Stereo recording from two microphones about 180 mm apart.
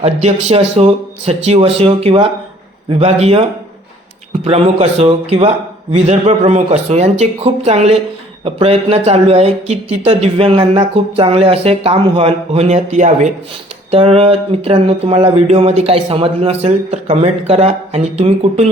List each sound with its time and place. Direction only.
0.0 s speech: 40° right (ahead or behind)
4.4 s speech: 35° right (ahead or behind)